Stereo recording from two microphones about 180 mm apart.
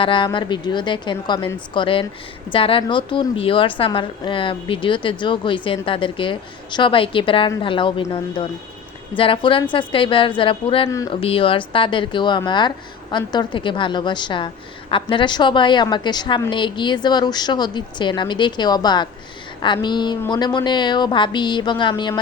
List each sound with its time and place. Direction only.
0.0 s speech: 30° left (ahead or behind)